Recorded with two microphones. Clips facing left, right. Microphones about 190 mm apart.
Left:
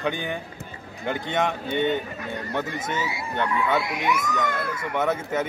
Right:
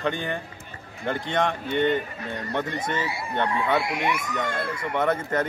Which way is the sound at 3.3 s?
30° right (ahead or behind).